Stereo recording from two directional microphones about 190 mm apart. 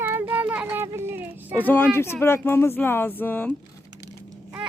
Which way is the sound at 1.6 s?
10° left (ahead or behind).